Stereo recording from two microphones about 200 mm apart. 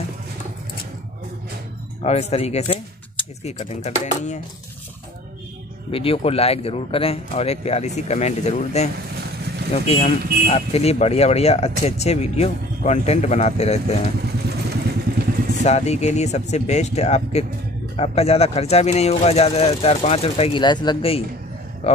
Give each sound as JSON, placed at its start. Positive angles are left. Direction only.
{"t": 2.0, "sound": "speech", "side_deg": 30}
{"t": 5.9, "sound": "speech", "side_deg": 30}
{"t": 14.7, "sound": "vehicle", "side_deg": -50}
{"t": 15.6, "sound": "speech", "side_deg": 35}